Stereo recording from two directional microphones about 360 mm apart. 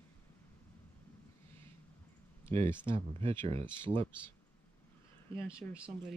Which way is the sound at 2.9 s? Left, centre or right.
Centre.